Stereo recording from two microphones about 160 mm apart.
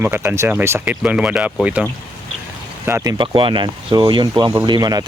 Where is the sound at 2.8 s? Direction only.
20° right (ahead or behind).